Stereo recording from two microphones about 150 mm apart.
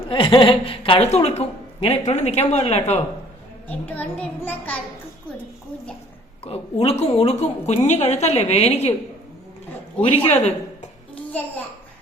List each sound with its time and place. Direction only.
0.1 s a woman's voice: 35° left (ahead or behind)
3.7 s a child's voice: 10° left (ahead or behind)
6.4 s a woman's voice: 45° left (ahead or behind)
10.2 s a man's voice: 45° left (ahead or behind)